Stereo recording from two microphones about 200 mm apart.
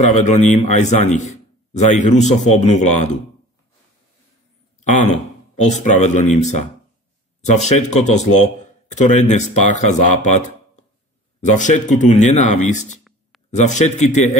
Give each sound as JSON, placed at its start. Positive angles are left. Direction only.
{"t": 0.0, "sound": "a man's voice", "side_deg": 35}
{"t": 4.7, "sound": "a man's voice", "side_deg": 35}